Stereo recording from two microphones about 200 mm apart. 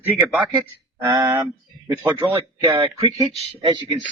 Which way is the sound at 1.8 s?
10° right (ahead or behind).